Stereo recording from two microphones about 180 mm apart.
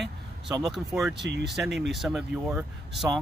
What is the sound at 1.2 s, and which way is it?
Speech, 70° right (ahead or behind).